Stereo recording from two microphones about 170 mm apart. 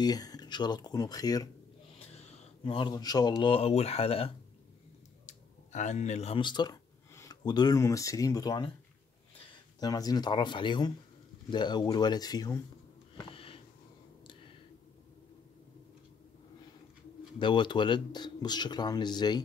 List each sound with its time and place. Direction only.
0.0 s speech: 20° left (ahead or behind)
2.0 s speech: 35° left (ahead or behind)
9.8 s speech: 20° left (ahead or behind)
13.3 s sniff: 35° left (ahead or behind)
17.4 s speech: 30° left (ahead or behind)